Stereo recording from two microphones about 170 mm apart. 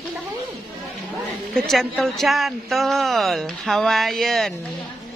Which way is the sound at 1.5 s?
5° left (ahead or behind).